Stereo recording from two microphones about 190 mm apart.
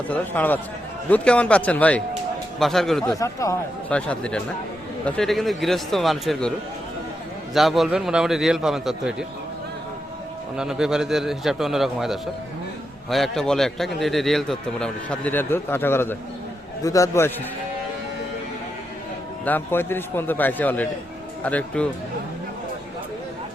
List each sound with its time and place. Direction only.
0.1 s a man's voice: 10° left (ahead or behind)
3.0 s a man's voice: 15° left (ahead or behind); by 6.5 s centre (ahead or behind)
7.5 s a man's voice: centre (ahead or behind)
10.6 s a man's voice: 5° right (ahead or behind); by 17.3 s 15° left (ahead or behind)
19.5 s speech: 10° left (ahead or behind)